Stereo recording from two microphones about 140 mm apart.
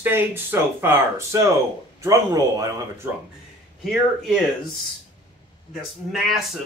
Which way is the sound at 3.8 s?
Centre (ahead or behind).